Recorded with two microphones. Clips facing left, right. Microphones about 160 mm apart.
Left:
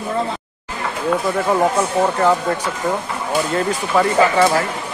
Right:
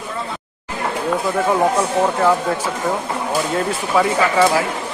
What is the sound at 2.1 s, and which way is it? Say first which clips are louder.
Speech: even; 5° right (ahead or behind).